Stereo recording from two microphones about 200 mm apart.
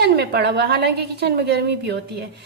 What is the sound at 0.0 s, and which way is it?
A woman's voice, 55° right (ahead or behind).